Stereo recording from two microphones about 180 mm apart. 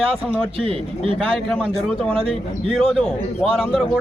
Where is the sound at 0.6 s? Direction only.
30° right (ahead or behind).